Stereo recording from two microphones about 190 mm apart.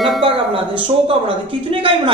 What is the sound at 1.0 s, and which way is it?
Speech, 30° right (ahead or behind).